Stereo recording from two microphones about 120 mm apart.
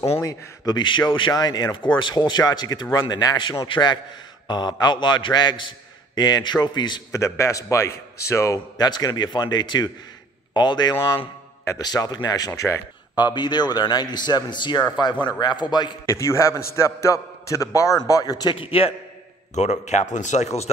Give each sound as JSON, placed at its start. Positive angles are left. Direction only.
{"t": 0.2, "sound": "speech", "side_deg": 30}
{"t": 7.1, "sound": "speech", "side_deg": 25}
{"t": 13.1, "sound": "speech", "side_deg": 40}
{"t": 16.1, "sound": "a man's voice", "side_deg": 25}
{"t": 19.5, "sound": "a man's voice", "side_deg": 75}